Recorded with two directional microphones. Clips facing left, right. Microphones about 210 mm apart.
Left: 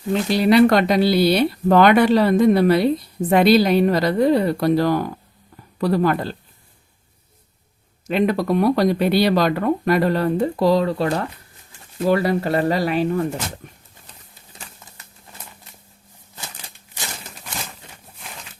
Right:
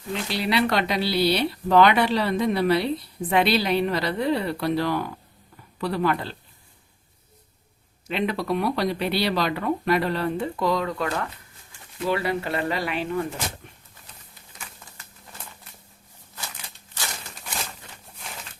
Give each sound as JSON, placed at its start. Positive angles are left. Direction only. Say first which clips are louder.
{"t": 0.1, "sound": "speech", "louder": "left 9 dB", "side_deg": 45}
{"t": 8.0, "sound": "speech", "louder": "left 7 dB", "side_deg": 45}
{"t": 13.6, "sound": "a sound", "louder": "left 5 dB", "side_deg": 40}